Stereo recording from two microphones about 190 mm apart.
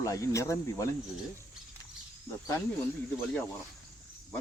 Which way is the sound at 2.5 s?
10° left (ahead or behind).